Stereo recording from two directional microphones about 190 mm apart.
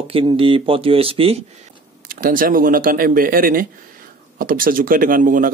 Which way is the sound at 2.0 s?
50° right (ahead or behind).